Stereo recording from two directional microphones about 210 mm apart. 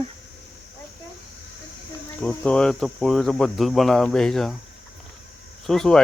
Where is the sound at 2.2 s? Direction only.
5° left (ahead or behind).